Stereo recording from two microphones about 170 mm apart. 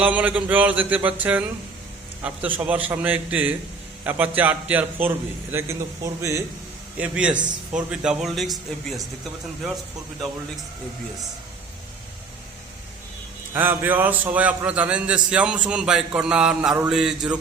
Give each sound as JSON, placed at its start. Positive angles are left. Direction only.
{"t": 0.0, "sound": "a man's voice", "side_deg": -10}
{"t": 2.6, "sound": "a man's voice", "side_deg": -10}
{"t": 6.9, "sound": "a man's voice", "side_deg": -5}
{"t": 13.5, "sound": "a man's voice", "side_deg": -10}